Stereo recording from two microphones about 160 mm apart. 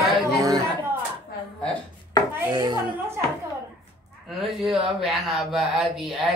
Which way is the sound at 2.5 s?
25° right (ahead or behind).